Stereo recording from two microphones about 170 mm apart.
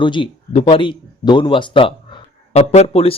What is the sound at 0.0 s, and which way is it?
Speech, 30° left (ahead or behind).